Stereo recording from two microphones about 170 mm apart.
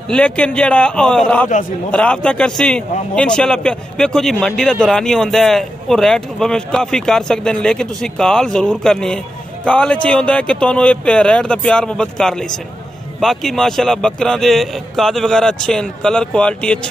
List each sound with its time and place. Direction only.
0.1 s a man's voice: 5° left (ahead or behind)